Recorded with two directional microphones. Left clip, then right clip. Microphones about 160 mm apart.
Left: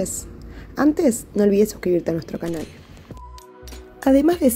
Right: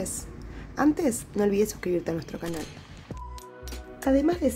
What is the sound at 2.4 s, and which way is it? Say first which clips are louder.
Speech: left 6 dB; centre (ahead or behind).